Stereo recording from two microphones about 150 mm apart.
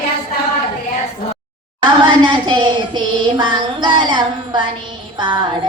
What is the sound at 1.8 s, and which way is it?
Music, 30° right (ahead or behind).